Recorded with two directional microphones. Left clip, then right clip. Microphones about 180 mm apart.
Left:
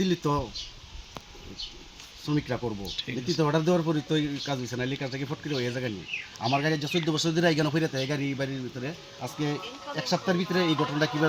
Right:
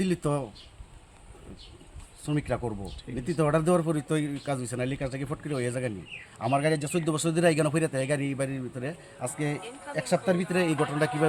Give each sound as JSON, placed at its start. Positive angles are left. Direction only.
{"t": 0.0, "sound": "speech", "side_deg": -20}
{"t": 2.3, "sound": "speech", "side_deg": -20}